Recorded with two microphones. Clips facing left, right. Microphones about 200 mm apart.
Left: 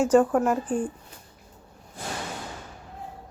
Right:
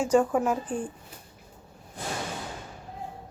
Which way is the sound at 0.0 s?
5° left (ahead or behind).